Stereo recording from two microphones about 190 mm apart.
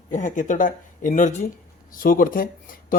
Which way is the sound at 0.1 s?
40° left (ahead or behind).